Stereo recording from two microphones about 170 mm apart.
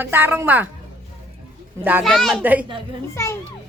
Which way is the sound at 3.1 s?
15° left (ahead or behind).